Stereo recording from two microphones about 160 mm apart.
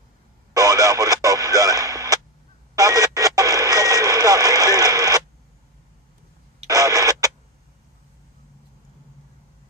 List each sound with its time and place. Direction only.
0.5 s radio: 20° right (ahead or behind)
6.7 s printer: 20° right (ahead or behind)